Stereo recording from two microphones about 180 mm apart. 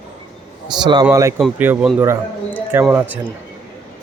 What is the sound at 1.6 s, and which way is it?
A man's voice, 10° right (ahead or behind).